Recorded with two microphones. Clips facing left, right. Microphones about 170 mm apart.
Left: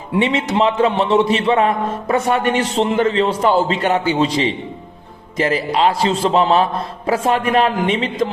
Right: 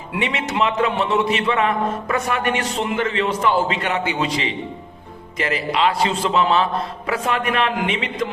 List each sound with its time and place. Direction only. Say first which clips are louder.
0.2 s a man's voice: left 5 dB; 30° left (ahead or behind)